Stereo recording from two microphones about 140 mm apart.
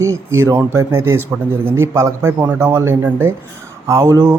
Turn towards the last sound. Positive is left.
turn(degrees=-20)  # may be behind; listen again after turning